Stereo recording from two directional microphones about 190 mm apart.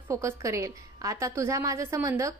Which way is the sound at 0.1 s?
15° right (ahead or behind).